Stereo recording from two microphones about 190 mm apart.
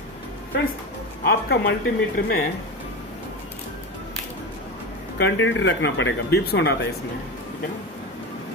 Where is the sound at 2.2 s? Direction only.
50° left (ahead or behind).